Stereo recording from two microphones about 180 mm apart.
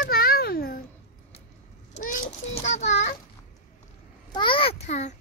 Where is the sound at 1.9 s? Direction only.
40° left (ahead or behind).